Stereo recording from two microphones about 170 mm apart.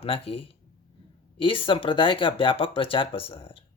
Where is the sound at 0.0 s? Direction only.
35° left (ahead or behind).